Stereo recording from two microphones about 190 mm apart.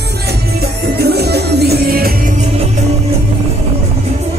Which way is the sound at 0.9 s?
60° right (ahead or behind).